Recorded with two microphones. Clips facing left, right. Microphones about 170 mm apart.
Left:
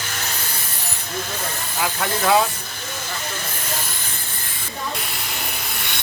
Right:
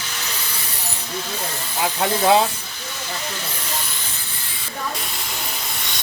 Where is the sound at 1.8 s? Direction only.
25° right (ahead or behind).